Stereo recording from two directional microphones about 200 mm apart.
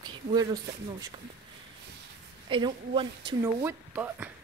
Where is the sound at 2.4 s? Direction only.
25° right (ahead or behind).